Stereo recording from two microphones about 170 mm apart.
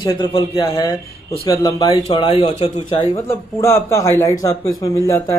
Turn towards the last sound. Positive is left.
turn(degrees=20)  # may be behind; listen again after turning